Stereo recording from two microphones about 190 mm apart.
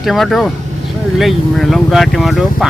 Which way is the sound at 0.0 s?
Centre (ahead or behind).